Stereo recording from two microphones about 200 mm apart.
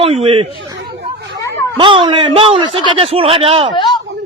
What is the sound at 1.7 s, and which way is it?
A man's voice, 25° right (ahead or behind).